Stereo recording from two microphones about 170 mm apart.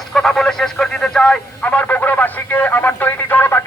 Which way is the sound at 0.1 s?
Centre (ahead or behind).